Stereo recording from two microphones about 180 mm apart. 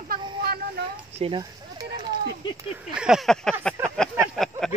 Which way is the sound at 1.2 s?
25° right (ahead or behind).